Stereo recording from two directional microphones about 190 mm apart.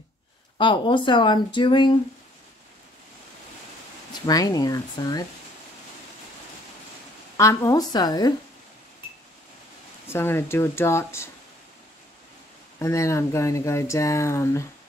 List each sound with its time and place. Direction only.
0.6 s speech: 25° left (ahead or behind)
4.3 s speech: 20° left (ahead or behind)
7.3 s speech: 15° left (ahead or behind)
10.0 s speech: 10° left (ahead or behind)
12.7 s speech: 15° left (ahead or behind)